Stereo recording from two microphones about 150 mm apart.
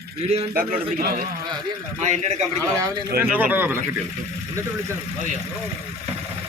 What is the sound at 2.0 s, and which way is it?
Speech, 50° right (ahead or behind).